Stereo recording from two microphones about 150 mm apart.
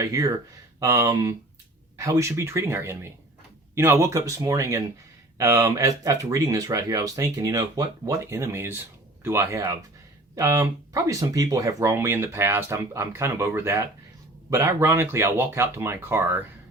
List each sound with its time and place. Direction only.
0.0 s speech: 20° right (ahead or behind)